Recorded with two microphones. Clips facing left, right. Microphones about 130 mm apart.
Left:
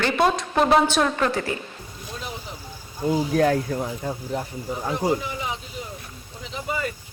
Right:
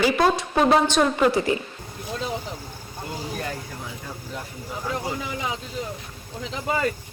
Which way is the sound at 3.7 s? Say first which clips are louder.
Left 9 dB; 45° left (ahead or behind).